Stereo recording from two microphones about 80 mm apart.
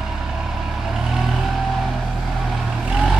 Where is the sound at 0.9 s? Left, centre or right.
Centre.